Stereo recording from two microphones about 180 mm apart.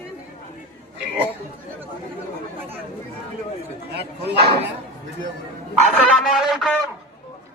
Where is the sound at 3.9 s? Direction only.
65° right (ahead or behind).